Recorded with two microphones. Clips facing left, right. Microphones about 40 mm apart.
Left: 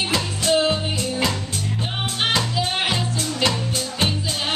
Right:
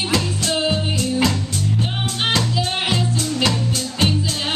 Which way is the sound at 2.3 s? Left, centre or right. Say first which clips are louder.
Right 3 dB; centre.